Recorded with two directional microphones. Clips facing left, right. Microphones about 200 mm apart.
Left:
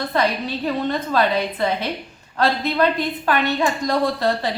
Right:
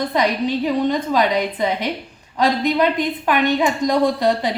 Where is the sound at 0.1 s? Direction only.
15° right (ahead or behind).